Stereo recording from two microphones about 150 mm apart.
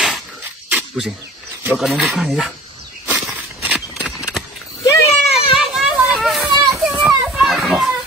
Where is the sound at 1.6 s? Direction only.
Centre (ahead or behind).